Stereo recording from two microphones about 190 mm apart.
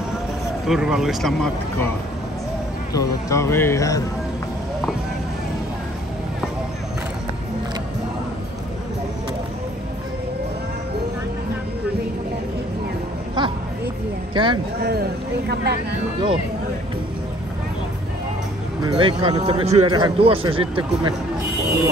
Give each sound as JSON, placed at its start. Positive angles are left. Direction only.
{"t": 0.7, "sound": "speech", "side_deg": -5}
{"t": 2.9, "sound": "speech", "side_deg": 15}
{"t": 13.4, "sound": "a sound", "side_deg": -25}
{"t": 14.3, "sound": "speech", "side_deg": -25}
{"t": 14.8, "sound": "speech", "side_deg": -55}
{"t": 18.9, "sound": "a man's voice", "side_deg": -25}